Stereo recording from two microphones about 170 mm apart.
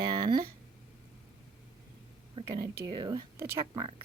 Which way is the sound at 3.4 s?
15° right (ahead or behind).